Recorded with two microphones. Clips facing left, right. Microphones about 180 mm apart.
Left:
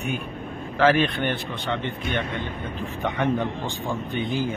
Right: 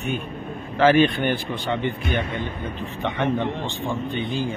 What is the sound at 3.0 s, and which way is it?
Speech, centre (ahead or behind).